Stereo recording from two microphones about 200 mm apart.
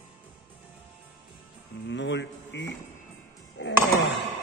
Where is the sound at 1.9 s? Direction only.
65° left (ahead or behind).